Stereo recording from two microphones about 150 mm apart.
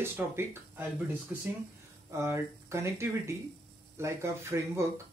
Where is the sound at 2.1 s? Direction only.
20° right (ahead or behind).